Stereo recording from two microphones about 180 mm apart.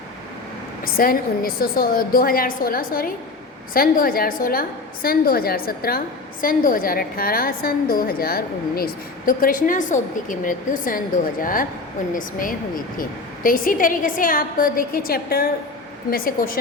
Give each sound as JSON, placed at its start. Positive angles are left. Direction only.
{"t": 0.9, "sound": "a woman's voice", "side_deg": 55}